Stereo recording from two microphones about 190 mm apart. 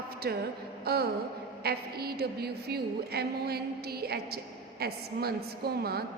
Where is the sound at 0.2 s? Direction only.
55° right (ahead or behind).